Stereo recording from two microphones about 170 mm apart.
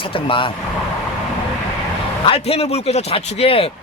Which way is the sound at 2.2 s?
35° left (ahead or behind).